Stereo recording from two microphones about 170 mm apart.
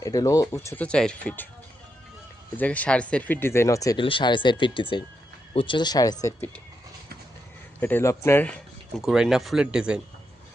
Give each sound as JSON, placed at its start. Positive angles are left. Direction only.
{"t": 0.0, "sound": "speech", "side_deg": 20}
{"t": 2.6, "sound": "speech", "side_deg": 10}
{"t": 7.8, "sound": "speech", "side_deg": 10}
{"t": 9.0, "sound": "speech", "side_deg": 0}